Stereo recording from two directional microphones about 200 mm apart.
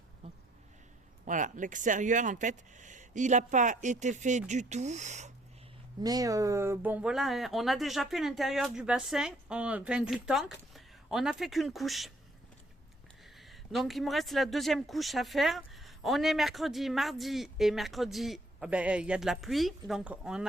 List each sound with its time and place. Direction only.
1.2 s speech: 40° right (ahead or behind)
6.0 s speech: 20° right (ahead or behind); by 12.1 s centre (ahead or behind)
13.2 s speech: centre (ahead or behind)